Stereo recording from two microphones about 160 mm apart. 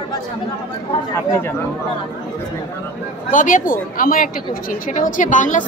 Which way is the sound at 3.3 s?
55° left (ahead or behind).